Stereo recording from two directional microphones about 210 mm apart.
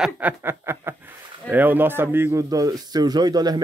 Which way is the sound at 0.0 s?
10° right (ahead or behind).